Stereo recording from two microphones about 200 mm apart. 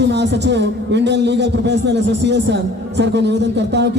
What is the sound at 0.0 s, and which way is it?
A man's voice, 60° right (ahead or behind).